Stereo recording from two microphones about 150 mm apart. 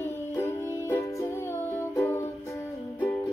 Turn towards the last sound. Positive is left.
turn(degrees=20)  # may be behind; listen again after turning